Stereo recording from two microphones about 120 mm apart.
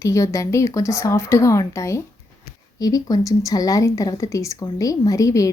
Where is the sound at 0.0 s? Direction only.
25° left (ahead or behind).